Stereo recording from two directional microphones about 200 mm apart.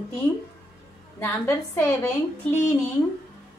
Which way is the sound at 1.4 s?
15° left (ahead or behind).